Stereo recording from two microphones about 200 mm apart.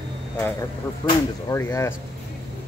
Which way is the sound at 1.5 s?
15° left (ahead or behind).